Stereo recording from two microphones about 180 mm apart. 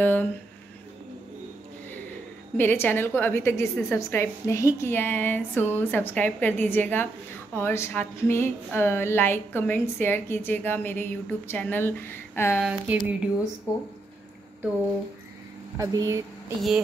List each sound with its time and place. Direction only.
0.0 s speech: 10° left (ahead or behind)
2.5 s speech: 10° left (ahead or behind)
12.6 s speech: 5° right (ahead or behind)
15.8 s speech: 20° right (ahead or behind)